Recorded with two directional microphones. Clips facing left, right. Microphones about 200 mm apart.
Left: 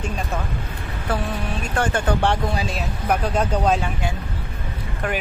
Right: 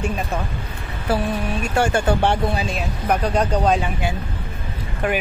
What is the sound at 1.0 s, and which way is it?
Speech, 10° right (ahead or behind).